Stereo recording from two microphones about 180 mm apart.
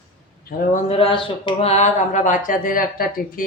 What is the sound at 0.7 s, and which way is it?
Speech, 40° left (ahead or behind).